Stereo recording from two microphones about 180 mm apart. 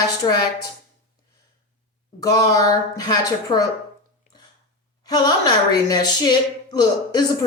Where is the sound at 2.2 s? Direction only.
20° left (ahead or behind).